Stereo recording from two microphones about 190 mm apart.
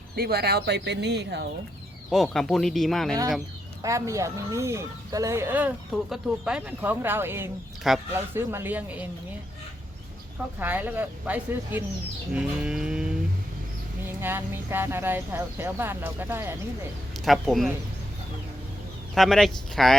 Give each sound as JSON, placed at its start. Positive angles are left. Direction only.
{"t": 0.2, "sound": "speech", "side_deg": -55}
{"t": 2.0, "sound": "speech", "side_deg": 0}
{"t": 3.8, "sound": "speech", "side_deg": -15}
{"t": 10.6, "sound": "speech", "side_deg": -10}
{"t": 14.2, "sound": "speech", "side_deg": -10}
{"t": 17.2, "sound": "speech", "side_deg": 0}
{"t": 19.1, "sound": "speech", "side_deg": 0}